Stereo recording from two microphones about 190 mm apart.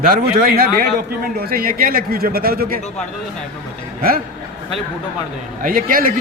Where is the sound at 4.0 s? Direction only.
50° right (ahead or behind).